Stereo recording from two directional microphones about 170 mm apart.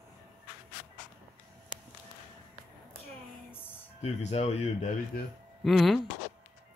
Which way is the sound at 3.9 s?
40° left (ahead or behind).